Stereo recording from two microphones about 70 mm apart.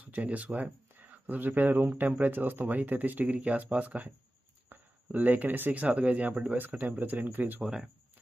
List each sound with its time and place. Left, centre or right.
0.0 s speech: right